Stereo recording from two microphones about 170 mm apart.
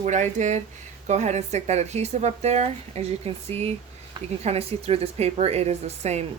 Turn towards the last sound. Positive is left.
turn(degrees=-40)  # may be behind; listen again after turning